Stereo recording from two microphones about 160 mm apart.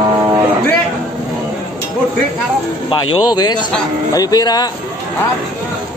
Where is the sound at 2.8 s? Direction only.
25° left (ahead or behind).